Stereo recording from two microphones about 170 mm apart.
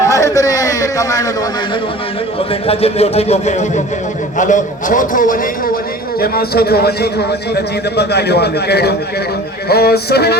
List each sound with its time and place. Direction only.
0.0 s a man's voice: 20° left (ahead or behind)
2.5 s a man's voice: 35° left (ahead or behind); by 10.3 s 70° left (ahead or behind)